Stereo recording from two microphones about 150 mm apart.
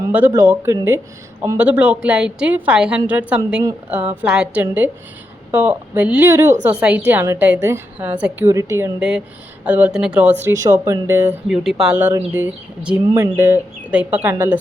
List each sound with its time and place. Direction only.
0.1 s a woman's voice: 10° right (ahead or behind)
9.0 s a woman's voice: 5° right (ahead or behind)
10.4 s a woman's voice: 20° right (ahead or behind)
11.5 s a woman's voice: 5° right (ahead or behind)